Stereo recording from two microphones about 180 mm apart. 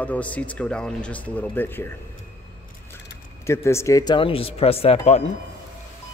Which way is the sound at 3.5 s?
15° left (ahead or behind).